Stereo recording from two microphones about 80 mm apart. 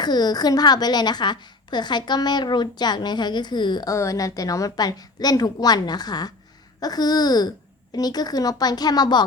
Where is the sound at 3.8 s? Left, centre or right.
Left.